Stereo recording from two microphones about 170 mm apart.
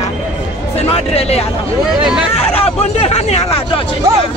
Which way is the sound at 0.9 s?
35° left (ahead or behind).